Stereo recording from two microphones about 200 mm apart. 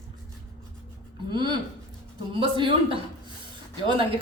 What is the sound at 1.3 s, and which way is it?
A woman's voice, 25° right (ahead or behind).